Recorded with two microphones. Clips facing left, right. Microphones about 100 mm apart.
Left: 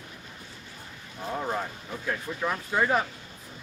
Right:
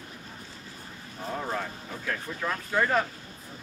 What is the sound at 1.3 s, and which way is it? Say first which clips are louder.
Speech: left 2 dB; 10° left (ahead or behind).